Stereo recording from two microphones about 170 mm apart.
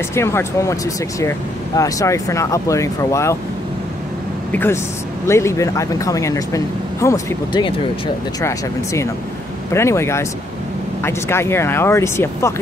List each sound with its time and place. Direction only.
0.1 s speech: 15° left (ahead or behind)
1.8 s speech: 20° left (ahead or behind)
4.5 s speech: 10° left (ahead or behind)